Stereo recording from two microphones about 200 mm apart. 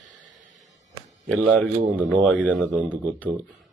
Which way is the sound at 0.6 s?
35° left (ahead or behind).